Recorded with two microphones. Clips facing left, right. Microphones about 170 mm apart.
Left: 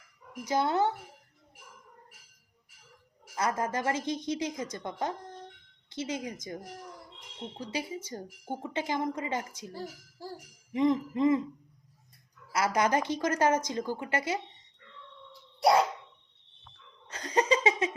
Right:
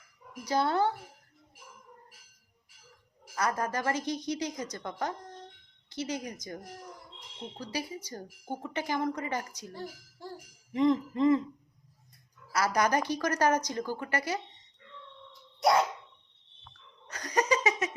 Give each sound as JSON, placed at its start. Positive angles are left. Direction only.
{"t": 0.4, "sound": "speech", "side_deg": 20}
{"t": 3.3, "sound": "speech", "side_deg": 25}
{"t": 10.7, "sound": "speech", "side_deg": 15}
{"t": 12.5, "sound": "speech", "side_deg": 25}
{"t": 17.1, "sound": "a sound", "side_deg": 25}